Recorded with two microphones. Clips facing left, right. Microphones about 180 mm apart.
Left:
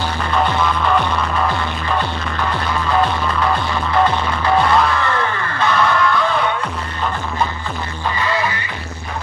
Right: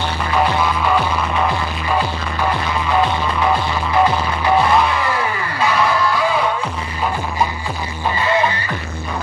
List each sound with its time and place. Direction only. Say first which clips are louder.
0.3 s music: right 1 dB; 5° right (ahead or behind)
3.0 s music: right 1 dB; 10° right (ahead or behind)
4.9 s a sound: even; 10° right (ahead or behind)
6.1 s music: even; 5° right (ahead or behind)
8.2 s music: right 3 dB; 25° right (ahead or behind)